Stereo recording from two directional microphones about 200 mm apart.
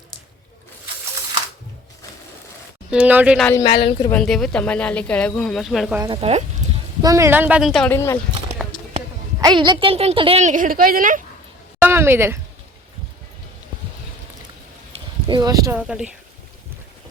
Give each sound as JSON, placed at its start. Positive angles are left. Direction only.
{"t": 2.9, "sound": "speech", "side_deg": -5}
{"t": 3.6, "sound": "a woman's voice", "side_deg": 25}
{"t": 4.1, "sound": "speech", "side_deg": 0}
{"t": 6.1, "sound": "speech", "side_deg": -30}
{"t": 7.0, "sound": "speech", "side_deg": -15}
{"t": 7.9, "sound": "speech", "side_deg": 15}
{"t": 9.4, "sound": "a woman's voice", "side_deg": -20}
{"t": 11.8, "sound": "a sound", "side_deg": -10}
{"t": 14.9, "sound": "a sound", "side_deg": -30}
{"t": 15.3, "sound": "speech", "side_deg": -20}
{"t": 15.7, "sound": "speech", "side_deg": -5}